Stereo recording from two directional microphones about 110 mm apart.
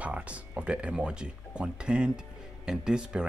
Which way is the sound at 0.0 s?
10° right (ahead or behind).